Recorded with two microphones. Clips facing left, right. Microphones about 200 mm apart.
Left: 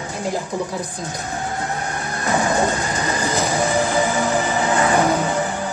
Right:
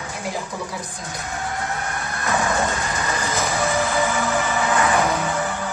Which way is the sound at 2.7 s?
35° left (ahead or behind).